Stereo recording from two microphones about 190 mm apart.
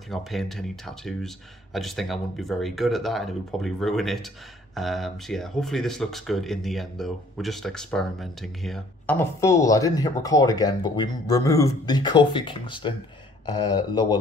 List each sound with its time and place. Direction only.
0.1 s speech: centre (ahead or behind); by 14.1 s 20° left (ahead or behind)